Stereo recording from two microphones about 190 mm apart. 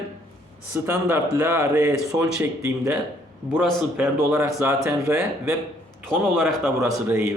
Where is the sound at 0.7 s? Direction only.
10° right (ahead or behind).